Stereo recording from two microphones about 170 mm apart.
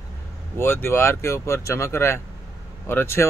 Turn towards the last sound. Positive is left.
turn(degrees=15)  # may be behind; listen again after turning